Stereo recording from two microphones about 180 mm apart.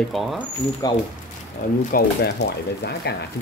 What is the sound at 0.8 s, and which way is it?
Speech, 20° left (ahead or behind).